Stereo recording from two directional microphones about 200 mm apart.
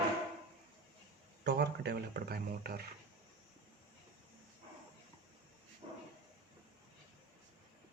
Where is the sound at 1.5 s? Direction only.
55° right (ahead or behind).